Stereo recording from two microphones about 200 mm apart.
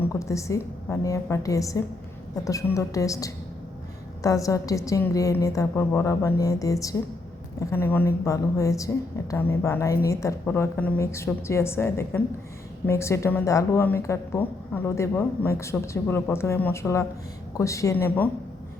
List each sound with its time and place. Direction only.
0.0 s a woman's voice: 15° left (ahead or behind)